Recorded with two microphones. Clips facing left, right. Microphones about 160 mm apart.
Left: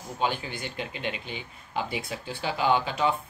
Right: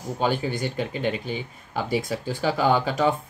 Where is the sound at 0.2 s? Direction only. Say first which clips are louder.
Right 5 dB; 40° right (ahead or behind).